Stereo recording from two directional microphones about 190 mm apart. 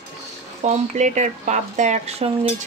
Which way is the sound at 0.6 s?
35° right (ahead or behind).